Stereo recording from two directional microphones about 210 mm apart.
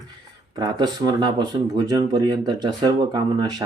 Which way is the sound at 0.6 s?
20° right (ahead or behind).